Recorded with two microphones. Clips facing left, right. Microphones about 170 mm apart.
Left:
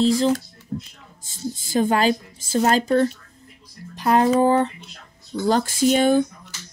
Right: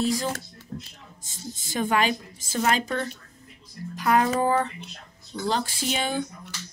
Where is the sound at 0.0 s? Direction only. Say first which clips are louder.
Left 7 dB; 30° left (ahead or behind).